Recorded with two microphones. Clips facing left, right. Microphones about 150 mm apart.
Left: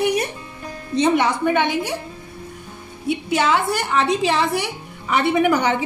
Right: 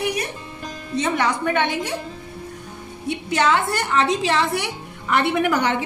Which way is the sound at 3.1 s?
5° left (ahead or behind).